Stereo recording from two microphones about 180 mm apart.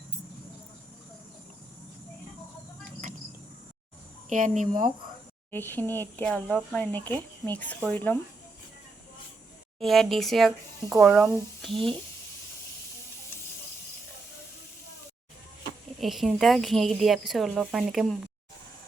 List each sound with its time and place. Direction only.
4.3 s speech: 45° right (ahead or behind)
5.5 s speech: 10° left (ahead or behind)
9.8 s speech: centre (ahead or behind)
16.0 s speech: centre (ahead or behind)